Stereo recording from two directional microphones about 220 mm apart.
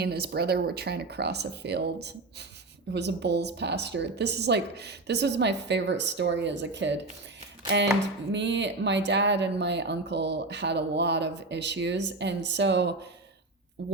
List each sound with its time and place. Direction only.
0.0 s speech: 45° right (ahead or behind)
8.3 s speech: 55° right (ahead or behind)